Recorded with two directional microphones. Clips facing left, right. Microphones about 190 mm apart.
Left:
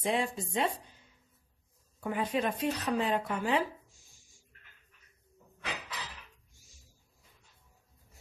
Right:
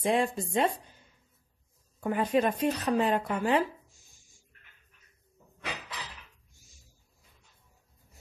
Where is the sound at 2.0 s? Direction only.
45° right (ahead or behind).